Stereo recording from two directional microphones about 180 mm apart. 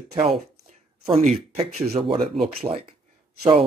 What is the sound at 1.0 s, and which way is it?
Speech, 35° right (ahead or behind).